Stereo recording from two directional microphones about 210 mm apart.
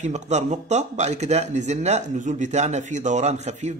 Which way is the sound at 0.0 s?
35° right (ahead or behind).